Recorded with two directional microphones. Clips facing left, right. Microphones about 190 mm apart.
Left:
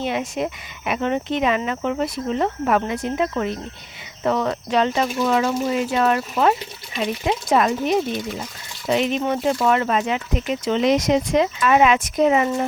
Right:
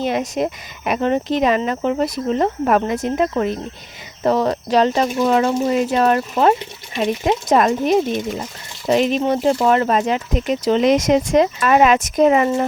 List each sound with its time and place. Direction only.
0.0 s speech: 40° right (ahead or behind)